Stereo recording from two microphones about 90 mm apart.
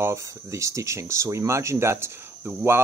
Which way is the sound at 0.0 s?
35° right (ahead or behind).